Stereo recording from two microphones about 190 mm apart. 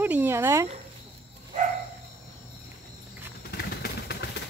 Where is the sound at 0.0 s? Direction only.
10° right (ahead or behind).